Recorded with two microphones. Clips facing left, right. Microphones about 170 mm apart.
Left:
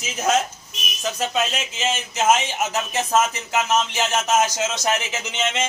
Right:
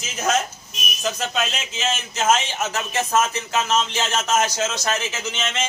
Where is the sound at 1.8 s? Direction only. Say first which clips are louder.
Left 1 dB; 15° left (ahead or behind).